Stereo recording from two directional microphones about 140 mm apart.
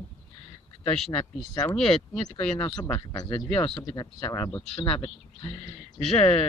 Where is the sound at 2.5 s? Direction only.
30° left (ahead or behind).